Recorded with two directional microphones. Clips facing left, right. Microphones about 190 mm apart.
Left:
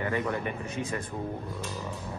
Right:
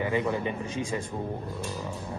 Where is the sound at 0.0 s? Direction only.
25° right (ahead or behind).